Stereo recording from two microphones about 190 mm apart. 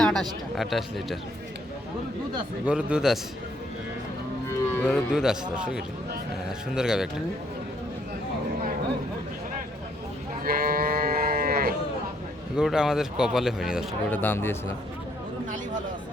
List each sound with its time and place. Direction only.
0.0 s speech: centre (ahead or behind)
2.6 s speech: 5° right (ahead or behind)
4.7 s music: 10° left (ahead or behind)
5.1 s speech: 5° right (ahead or behind)
10.4 s sheep: 50° right (ahead or behind)
12.5 s speech: 5° right (ahead or behind)
14.1 s speech: 10° left (ahead or behind)